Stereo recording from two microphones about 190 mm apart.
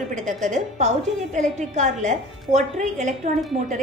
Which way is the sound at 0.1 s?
40° right (ahead or behind).